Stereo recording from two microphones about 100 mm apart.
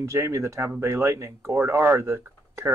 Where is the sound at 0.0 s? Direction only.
30° right (ahead or behind).